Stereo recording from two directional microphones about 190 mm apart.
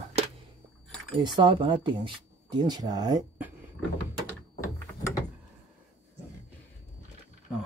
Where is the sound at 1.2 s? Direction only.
25° right (ahead or behind).